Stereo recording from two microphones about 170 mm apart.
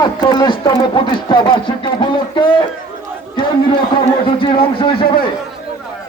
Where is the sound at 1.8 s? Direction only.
30° left (ahead or behind).